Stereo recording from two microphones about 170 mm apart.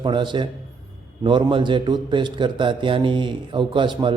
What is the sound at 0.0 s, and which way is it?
A man's voice, 25° right (ahead or behind).